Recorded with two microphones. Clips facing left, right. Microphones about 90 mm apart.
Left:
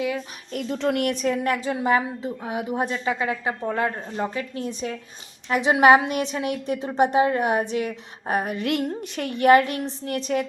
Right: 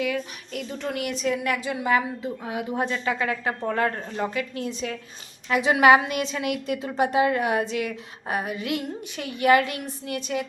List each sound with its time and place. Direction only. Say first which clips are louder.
0.5 s a woman's voice: left 6 dB; 50° left (ahead or behind)
1.3 s a woman's voice: left 2 dB; 40° left (ahead or behind); by 4.3 s 15° left (ahead or behind)
4.4 s a woman's voice: even; 35° left (ahead or behind)